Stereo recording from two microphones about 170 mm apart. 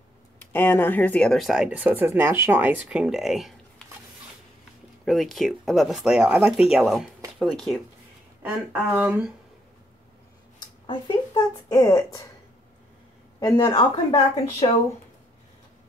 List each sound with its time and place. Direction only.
0.4 s speech: 10° left (ahead or behind)
5.0 s speech: centre (ahead or behind)
8.4 s speech: 10° right (ahead or behind)
10.9 s speech: 25° left (ahead or behind)
13.4 s speech: 25° left (ahead or behind)